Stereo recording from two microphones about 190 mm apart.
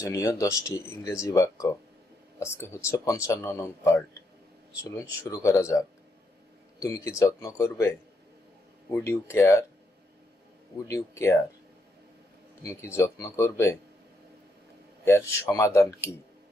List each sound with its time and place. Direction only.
0.0 s speech: 15° left (ahead or behind)
10.8 s speech: 15° left (ahead or behind)
12.6 s speech: 15° left (ahead or behind)
15.0 s speech: 15° left (ahead or behind)